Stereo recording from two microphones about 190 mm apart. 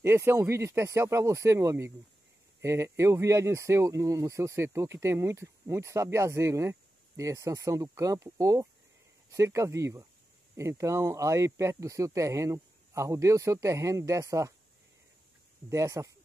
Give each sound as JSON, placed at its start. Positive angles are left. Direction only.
{"t": 0.0, "sound": "speech", "side_deg": -15}
{"t": 15.7, "sound": "speech", "side_deg": -15}